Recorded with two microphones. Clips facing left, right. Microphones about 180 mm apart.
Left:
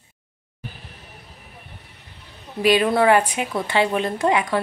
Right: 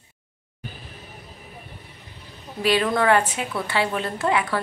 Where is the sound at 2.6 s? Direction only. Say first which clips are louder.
Left 4 dB; 15° left (ahead or behind).